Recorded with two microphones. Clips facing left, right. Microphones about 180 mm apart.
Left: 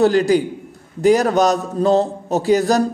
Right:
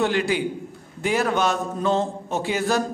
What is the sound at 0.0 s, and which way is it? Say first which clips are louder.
A man's voice: left 8 dB; 40° left (ahead or behind).